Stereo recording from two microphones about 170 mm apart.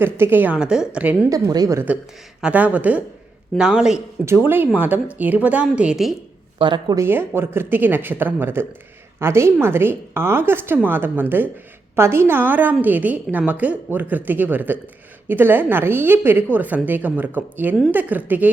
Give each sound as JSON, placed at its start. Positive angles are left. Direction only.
{"t": 0.0, "sound": "a woman's voice", "side_deg": -10}
{"t": 1.3, "sound": "a woman's voice", "side_deg": -20}
{"t": 6.6, "sound": "a woman's voice", "side_deg": -25}